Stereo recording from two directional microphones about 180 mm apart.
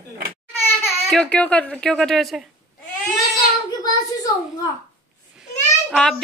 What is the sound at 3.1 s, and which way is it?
Child singing, 25° left (ahead or behind).